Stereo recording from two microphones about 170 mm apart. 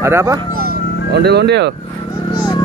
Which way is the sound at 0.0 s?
15° right (ahead or behind).